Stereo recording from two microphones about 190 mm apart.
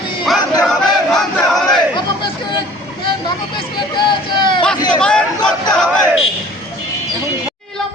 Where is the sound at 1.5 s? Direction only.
Centre (ahead or behind).